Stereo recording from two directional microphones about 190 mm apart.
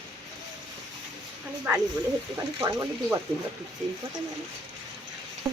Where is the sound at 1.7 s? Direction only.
5° right (ahead or behind).